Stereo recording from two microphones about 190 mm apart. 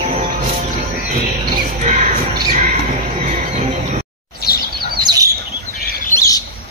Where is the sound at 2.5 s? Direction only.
40° right (ahead or behind).